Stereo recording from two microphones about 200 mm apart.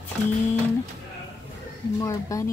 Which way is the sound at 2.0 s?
15° left (ahead or behind).